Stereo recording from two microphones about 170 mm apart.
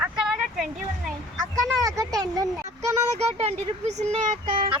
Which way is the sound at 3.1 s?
40° right (ahead or behind).